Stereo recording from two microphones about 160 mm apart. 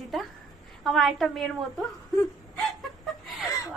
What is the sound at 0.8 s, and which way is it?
Speech, centre (ahead or behind).